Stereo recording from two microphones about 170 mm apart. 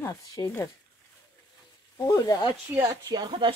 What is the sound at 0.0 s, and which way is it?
Speech, 25° left (ahead or behind).